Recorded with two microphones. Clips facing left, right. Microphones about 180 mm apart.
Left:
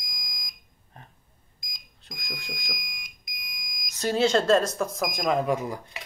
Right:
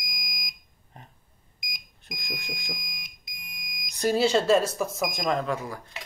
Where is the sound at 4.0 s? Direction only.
10° right (ahead or behind); by 5.7 s 15° left (ahead or behind).